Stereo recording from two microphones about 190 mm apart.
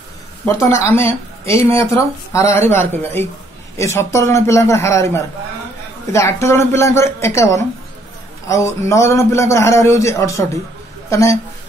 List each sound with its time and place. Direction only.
0.5 s a man's voice: 15° left (ahead or behind)